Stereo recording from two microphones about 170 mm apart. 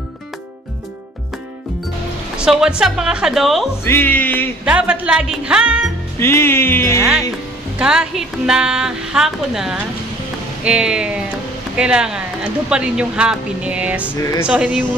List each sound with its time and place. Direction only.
2.3 s speech: 5° right (ahead or behind)
3.8 s music: 15° left (ahead or behind)
4.6 s speech: 5° right (ahead or behind)
6.1 s music: 15° left (ahead or behind)
7.8 s speech: 5° right (ahead or behind)
14.2 s speech: 20° left (ahead or behind)
14.5 s speech: 10° right (ahead or behind)